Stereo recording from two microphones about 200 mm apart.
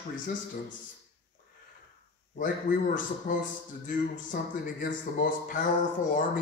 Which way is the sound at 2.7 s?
40° left (ahead or behind).